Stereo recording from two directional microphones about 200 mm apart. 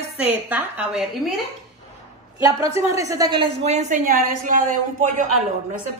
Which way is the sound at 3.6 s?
35° right (ahead or behind).